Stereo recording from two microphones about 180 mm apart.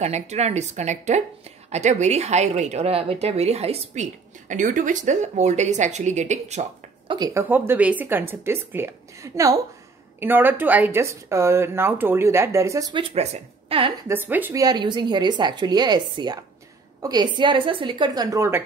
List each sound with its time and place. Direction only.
0.0 s a woman's voice: 40° right (ahead or behind)
7.1 s speech: 20° right (ahead or behind)
7.4 s speech: 10° right (ahead or behind)
13.1 s a woman's voice: 35° right (ahead or behind)
14.0 s speech: 10° right (ahead or behind)